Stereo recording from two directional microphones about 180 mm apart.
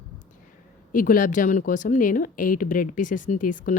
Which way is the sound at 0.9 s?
50° left (ahead or behind).